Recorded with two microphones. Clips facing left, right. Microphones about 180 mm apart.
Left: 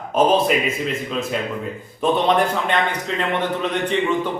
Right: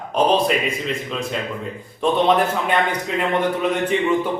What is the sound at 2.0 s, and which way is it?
Speech, centre (ahead or behind).